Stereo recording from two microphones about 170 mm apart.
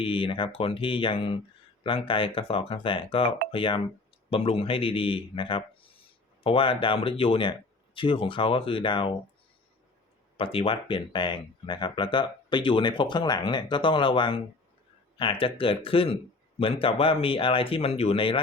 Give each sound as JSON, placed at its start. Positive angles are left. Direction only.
{"t": 0.0, "sound": "speech", "side_deg": 30}
{"t": 10.3, "sound": "speech", "side_deg": 35}